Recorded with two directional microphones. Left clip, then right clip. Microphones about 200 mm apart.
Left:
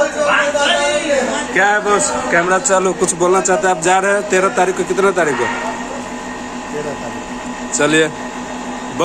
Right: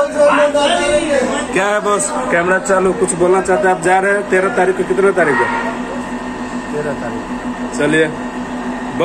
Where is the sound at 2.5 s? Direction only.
20° left (ahead or behind).